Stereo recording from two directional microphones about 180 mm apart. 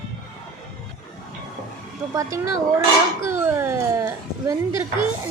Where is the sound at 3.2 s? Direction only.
15° right (ahead or behind).